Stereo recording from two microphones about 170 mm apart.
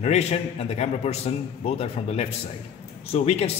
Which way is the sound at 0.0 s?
40° left (ahead or behind).